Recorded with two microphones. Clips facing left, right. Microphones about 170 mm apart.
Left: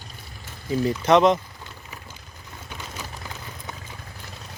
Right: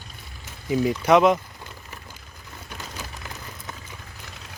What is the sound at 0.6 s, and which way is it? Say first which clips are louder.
Speech: right 1 dB; 15° right (ahead or behind).